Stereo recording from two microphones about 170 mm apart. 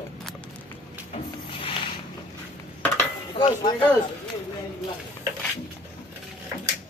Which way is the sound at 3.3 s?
30° left (ahead or behind).